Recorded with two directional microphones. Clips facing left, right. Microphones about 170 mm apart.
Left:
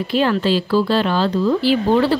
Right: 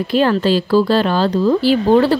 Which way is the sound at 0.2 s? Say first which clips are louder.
Right 2 dB; 40° right (ahead or behind).